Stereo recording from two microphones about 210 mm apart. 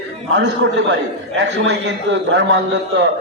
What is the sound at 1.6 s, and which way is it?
Speech, 60° right (ahead or behind).